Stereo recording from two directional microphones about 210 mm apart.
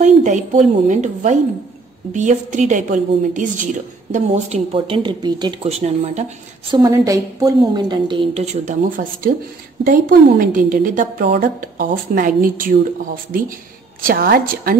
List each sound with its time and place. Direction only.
0.0 s speech: 35° right (ahead or behind)
6.7 s speech: 15° right (ahead or behind)
8.6 s a woman's voice: 40° right (ahead or behind)